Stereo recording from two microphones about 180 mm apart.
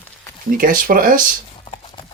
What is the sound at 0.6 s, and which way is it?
Speech, 50° right (ahead or behind).